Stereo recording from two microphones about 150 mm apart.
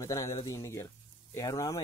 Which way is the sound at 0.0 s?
20° left (ahead or behind).